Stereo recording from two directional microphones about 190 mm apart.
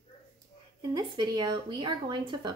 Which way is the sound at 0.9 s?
25° right (ahead or behind).